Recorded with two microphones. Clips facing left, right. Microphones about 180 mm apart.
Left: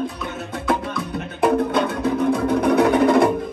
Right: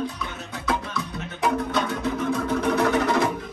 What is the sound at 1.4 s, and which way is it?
Music, 55° left (ahead or behind).